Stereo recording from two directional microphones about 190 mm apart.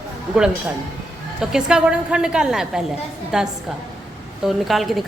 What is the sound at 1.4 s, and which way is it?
A woman's voice, 5° right (ahead or behind).